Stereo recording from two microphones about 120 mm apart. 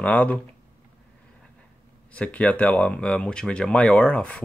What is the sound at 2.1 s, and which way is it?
Speech, 10° left (ahead or behind).